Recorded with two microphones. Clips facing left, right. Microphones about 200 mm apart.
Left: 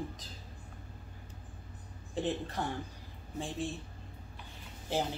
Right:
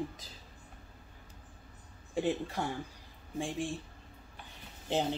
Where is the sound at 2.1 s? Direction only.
10° right (ahead or behind).